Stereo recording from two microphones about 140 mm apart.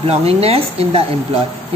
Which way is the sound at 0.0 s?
45° right (ahead or behind).